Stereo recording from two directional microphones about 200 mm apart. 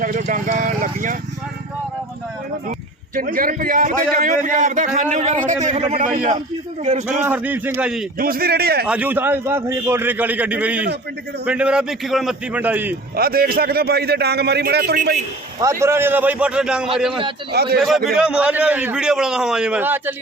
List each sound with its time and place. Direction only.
0.0 s speech: 45° right (ahead or behind)
3.2 s a man's voice: 45° right (ahead or behind)
7.3 s a man's voice: 10° right (ahead or behind)
8.2 s a man's voice: 50° right (ahead or behind)
8.9 s a man's voice: 10° right (ahead or behind)
13.1 s a man's voice: 50° right (ahead or behind)
15.6 s a man's voice: 15° right (ahead or behind)
17.5 s a man's voice: 50° right (ahead or behind)
17.7 s a man's voice: centre (ahead or behind)